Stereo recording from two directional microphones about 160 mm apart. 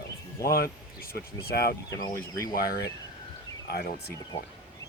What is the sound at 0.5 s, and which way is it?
Speech, 70° left (ahead or behind).